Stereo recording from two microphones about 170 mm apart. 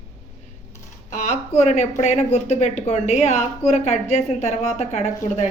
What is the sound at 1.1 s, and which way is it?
A woman's voice, 45° left (ahead or behind).